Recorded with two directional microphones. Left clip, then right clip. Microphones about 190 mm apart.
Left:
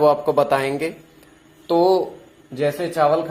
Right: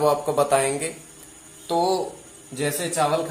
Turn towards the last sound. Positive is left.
turn(degrees=55)  # may be behind; listen again after turning